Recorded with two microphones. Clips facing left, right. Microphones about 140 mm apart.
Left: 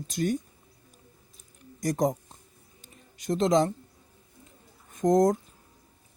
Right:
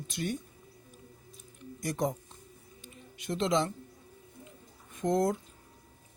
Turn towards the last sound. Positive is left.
turn(degrees=40)  # may be behind; listen again after turning